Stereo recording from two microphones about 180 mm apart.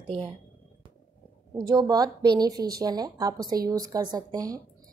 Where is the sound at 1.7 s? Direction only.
20° right (ahead or behind).